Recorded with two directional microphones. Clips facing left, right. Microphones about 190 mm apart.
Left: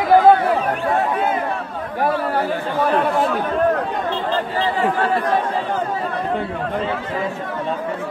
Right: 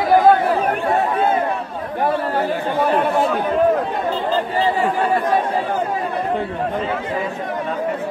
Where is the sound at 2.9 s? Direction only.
Centre (ahead or behind).